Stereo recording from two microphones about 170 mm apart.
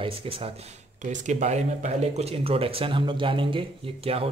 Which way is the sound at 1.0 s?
45° right (ahead or behind).